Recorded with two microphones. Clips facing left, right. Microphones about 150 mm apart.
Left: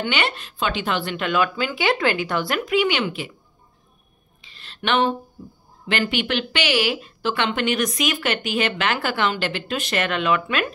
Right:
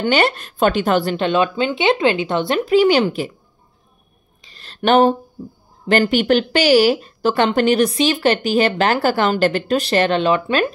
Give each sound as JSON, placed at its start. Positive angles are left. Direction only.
{"t": 0.0, "sound": "speech", "side_deg": -40}
{"t": 4.5, "sound": "a sound", "side_deg": -40}
{"t": 5.9, "sound": "speech", "side_deg": -40}